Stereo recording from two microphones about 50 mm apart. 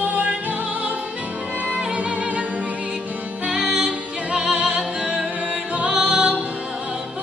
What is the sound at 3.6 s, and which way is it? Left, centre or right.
Music, centre.